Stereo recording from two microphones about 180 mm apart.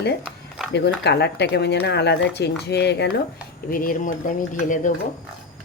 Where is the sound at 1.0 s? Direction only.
70° left (ahead or behind).